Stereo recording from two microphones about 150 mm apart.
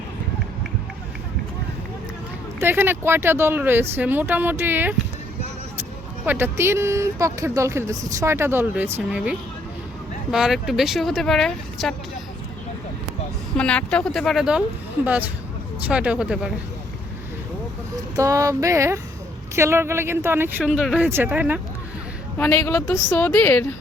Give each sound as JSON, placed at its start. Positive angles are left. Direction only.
{"t": 2.6, "sound": "speech", "side_deg": -15}
{"t": 6.2, "sound": "speech", "side_deg": -15}
{"t": 13.6, "sound": "speech", "side_deg": 5}
{"t": 15.9, "sound": "speech", "side_deg": -5}
{"t": 18.2, "sound": "speech", "side_deg": -20}
{"t": 22.4, "sound": "a woman's voice", "side_deg": 15}